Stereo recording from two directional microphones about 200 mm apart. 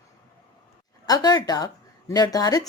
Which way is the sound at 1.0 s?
20° left (ahead or behind).